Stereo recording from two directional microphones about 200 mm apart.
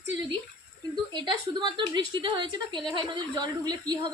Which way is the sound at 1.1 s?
20° right (ahead or behind).